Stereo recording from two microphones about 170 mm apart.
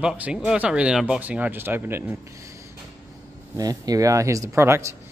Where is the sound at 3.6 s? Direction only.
20° right (ahead or behind).